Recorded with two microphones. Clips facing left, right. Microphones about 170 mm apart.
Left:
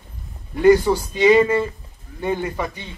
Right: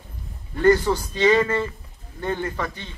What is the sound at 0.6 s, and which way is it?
A man's voice, 10° left (ahead or behind).